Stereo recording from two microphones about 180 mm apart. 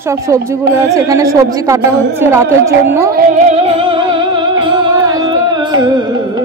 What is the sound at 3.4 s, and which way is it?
Music, 40° right (ahead or behind).